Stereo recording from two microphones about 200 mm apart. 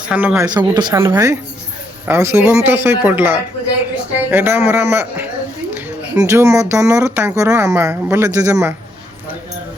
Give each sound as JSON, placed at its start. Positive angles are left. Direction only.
{"t": 0.1, "sound": "speech", "side_deg": -5}
{"t": 0.5, "sound": "speech", "side_deg": -20}